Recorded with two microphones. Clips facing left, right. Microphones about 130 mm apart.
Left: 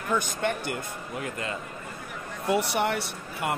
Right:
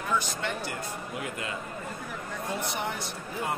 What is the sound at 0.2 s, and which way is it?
Speech, 55° left (ahead or behind).